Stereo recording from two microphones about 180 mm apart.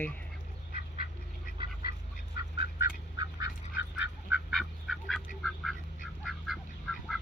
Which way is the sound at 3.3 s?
20° right (ahead or behind).